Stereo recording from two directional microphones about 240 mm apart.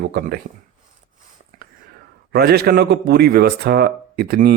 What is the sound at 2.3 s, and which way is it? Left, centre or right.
A man's voice, right.